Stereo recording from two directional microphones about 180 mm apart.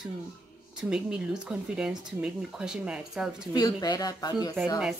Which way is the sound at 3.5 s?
20° left (ahead or behind).